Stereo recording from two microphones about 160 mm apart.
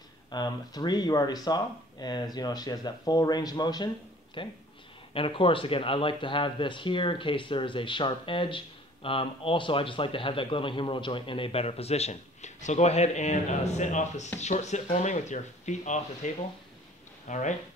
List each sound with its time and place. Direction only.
0.3 s speech: 25° left (ahead or behind); by 16.3 s 50° left (ahead or behind)
17.3 s speech: 50° left (ahead or behind)